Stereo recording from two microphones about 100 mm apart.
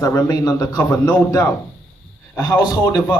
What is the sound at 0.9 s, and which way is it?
Speech, 15° left (ahead or behind).